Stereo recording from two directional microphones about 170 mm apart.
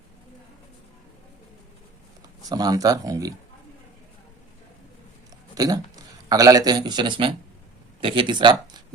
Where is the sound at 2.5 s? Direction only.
20° right (ahead or behind).